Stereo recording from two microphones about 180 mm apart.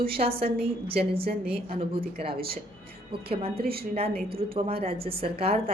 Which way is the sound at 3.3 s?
30° right (ahead or behind).